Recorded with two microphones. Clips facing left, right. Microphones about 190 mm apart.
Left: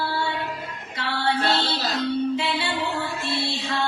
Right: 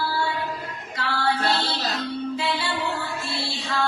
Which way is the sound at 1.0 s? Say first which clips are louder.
Even; 25° left (ahead or behind).